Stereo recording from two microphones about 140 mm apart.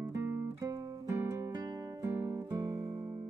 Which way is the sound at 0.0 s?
20° right (ahead or behind).